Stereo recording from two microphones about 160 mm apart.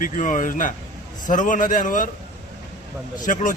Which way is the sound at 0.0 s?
55° left (ahead or behind).